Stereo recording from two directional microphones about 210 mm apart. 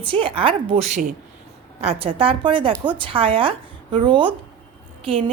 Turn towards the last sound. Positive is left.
turn(degrees=-25)  # may be behind; listen again after turning